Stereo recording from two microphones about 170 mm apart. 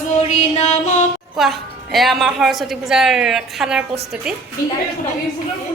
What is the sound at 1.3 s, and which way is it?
A woman's voice, centre (ahead or behind).